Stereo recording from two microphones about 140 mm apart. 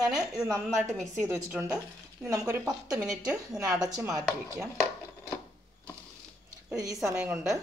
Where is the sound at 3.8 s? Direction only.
25° right (ahead or behind).